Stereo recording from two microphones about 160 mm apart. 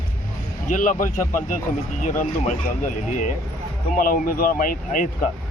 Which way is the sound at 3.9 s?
60° left (ahead or behind).